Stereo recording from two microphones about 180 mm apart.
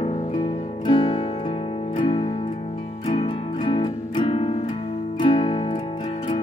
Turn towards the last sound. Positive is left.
turn(degrees=30)  # may be behind; listen again after turning